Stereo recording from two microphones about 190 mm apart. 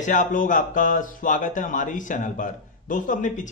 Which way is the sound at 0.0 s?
45° left (ahead or behind).